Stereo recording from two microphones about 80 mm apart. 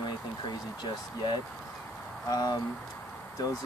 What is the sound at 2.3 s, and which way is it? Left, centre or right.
Speech, left.